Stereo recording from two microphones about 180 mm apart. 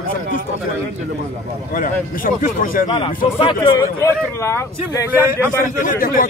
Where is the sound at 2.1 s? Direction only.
50° left (ahead or behind).